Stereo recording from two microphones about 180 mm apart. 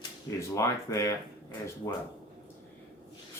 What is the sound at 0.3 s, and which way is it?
Speech, 15° left (ahead or behind).